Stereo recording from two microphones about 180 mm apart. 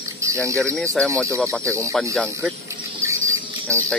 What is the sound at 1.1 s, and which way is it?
Speech, 15° right (ahead or behind).